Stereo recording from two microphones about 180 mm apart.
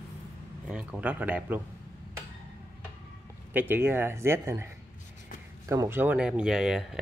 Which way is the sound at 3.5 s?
10° right (ahead or behind).